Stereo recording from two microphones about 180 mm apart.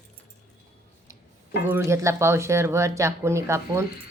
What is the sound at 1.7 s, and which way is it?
Speech, 15° right (ahead or behind).